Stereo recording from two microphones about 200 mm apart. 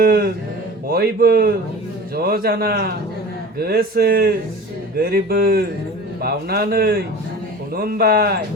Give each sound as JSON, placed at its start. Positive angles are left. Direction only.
{"t": 0.0, "sound": "a man's voice", "side_deg": -50}